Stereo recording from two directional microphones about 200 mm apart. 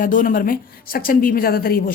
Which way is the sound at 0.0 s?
45° left (ahead or behind).